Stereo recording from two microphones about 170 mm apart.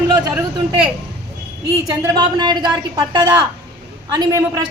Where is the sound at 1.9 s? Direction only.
20° right (ahead or behind).